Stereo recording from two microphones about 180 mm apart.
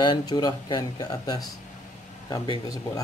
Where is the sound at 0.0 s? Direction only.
25° left (ahead or behind).